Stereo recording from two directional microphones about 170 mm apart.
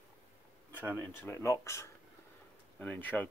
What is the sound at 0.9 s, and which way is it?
Speech, 15° left (ahead or behind).